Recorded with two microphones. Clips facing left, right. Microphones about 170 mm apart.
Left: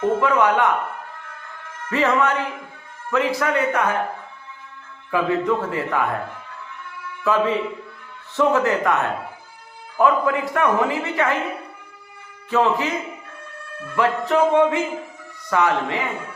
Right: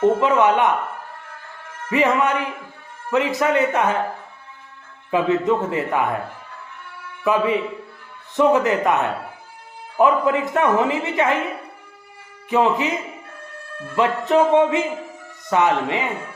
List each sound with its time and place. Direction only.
0.0 s speech: 20° right (ahead or behind)
1.9 s a man's voice: 15° right (ahead or behind)
5.1 s speech: 20° right (ahead or behind)
7.3 s a man's voice: 15° right (ahead or behind)
12.5 s a man's voice: 15° right (ahead or behind)
13.9 s speech: 20° right (ahead or behind)